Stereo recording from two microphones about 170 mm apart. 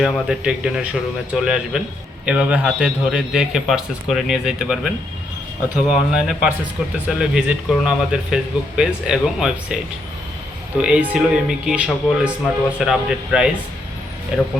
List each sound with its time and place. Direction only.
0.0 s a man's voice: 5° right (ahead or behind)
10.8 s a man's voice: 5° right (ahead or behind)